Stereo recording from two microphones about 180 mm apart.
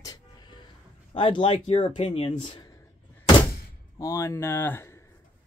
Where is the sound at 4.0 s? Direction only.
15° left (ahead or behind).